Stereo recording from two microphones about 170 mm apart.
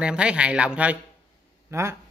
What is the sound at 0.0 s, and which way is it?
Speech, 5° right (ahead or behind).